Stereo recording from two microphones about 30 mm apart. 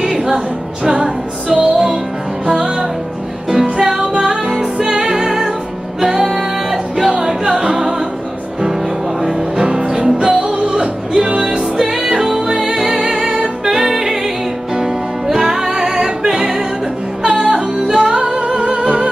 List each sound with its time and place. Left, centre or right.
0.0 s music: centre
3.4 s music: centre
4.7 s music: centre
9.8 s music: right
15.2 s music: centre
17.3 s music: right
17.8 s music: centre
18.1 s music: right